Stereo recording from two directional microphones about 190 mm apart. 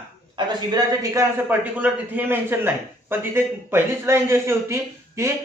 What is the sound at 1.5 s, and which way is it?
A man's voice, 10° right (ahead or behind).